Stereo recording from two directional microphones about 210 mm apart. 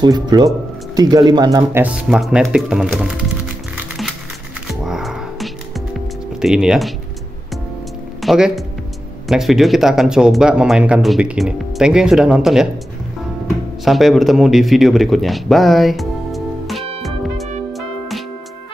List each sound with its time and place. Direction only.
0.0 s speech: 20° right (ahead or behind)
2.0 s speech: centre (ahead or behind)
3.7 s music: centre (ahead or behind)
6.4 s speech: 5° right (ahead or behind)
8.2 s speech: centre (ahead or behind)
13.8 s a man's voice: centre (ahead or behind)
17.0 s music: centre (ahead or behind)